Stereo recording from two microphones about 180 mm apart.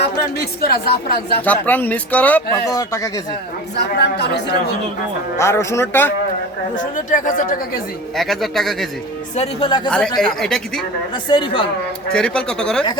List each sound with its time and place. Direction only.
0.0 s speech: 60° left (ahead or behind)
1.5 s speech: 10° left (ahead or behind)
3.8 s a woman's voice: 70° left (ahead or behind)
5.4 s speech: 15° left (ahead or behind)
6.7 s speech: 45° left (ahead or behind)
8.1 s a man's voice: centre (ahead or behind)
9.3 s speech: 35° left (ahead or behind)
10.2 s a man's voice: 5° left (ahead or behind)
11.1 s speech: 25° left (ahead or behind)
12.1 s a man's voice: 5° left (ahead or behind)